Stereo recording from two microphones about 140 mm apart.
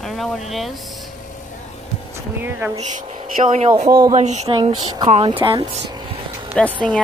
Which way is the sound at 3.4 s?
60° right (ahead or behind).